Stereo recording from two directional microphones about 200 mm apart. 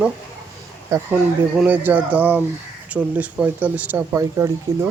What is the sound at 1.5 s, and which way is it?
Speech, 10° right (ahead or behind).